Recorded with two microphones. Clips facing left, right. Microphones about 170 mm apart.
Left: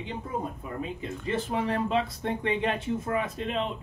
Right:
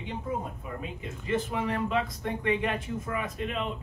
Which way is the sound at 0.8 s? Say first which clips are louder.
Left 4 dB; 30° left (ahead or behind).